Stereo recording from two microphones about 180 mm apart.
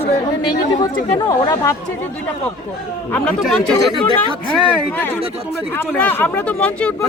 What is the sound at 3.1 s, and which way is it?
Speech, 5° left (ahead or behind).